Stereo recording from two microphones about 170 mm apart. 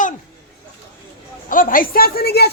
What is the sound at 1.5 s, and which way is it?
Speech, 55° left (ahead or behind).